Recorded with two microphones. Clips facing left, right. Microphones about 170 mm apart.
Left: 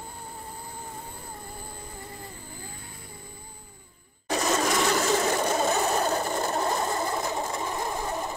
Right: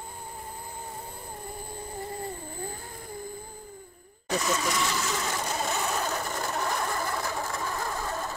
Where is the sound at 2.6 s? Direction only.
45° right (ahead or behind).